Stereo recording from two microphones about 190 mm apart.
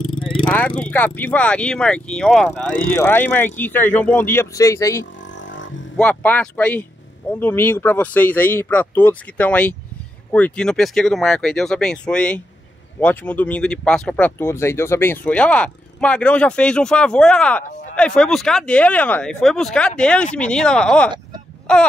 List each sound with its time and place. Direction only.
0.0 s vehicle: 25° left (ahead or behind)
0.5 s speech: 5° left (ahead or behind)
5.2 s vehicle: 75° left (ahead or behind)
5.9 s speech: 10° left (ahead or behind)